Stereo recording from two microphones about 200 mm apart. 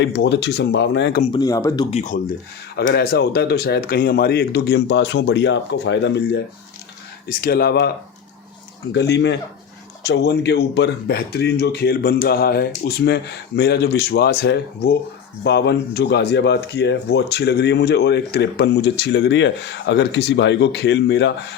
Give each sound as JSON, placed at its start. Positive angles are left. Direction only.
{"t": 0.0, "sound": "speech", "side_deg": 55}
{"t": 1.3, "sound": "speech", "side_deg": 20}
{"t": 1.9, "sound": "speech", "side_deg": 35}
{"t": 2.7, "sound": "speech", "side_deg": 55}
{"t": 8.9, "sound": "speech", "side_deg": 60}